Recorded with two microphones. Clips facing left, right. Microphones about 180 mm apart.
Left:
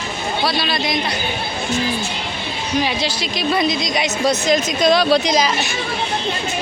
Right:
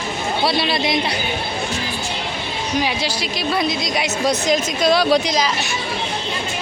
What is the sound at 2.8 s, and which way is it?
A woman's voice, 10° right (ahead or behind).